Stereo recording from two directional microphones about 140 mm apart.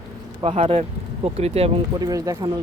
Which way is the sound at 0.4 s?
45° right (ahead or behind).